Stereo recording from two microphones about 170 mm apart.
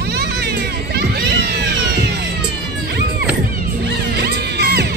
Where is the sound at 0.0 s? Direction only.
70° right (ahead or behind).